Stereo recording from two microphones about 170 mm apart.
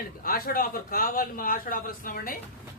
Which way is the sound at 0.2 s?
60° left (ahead or behind).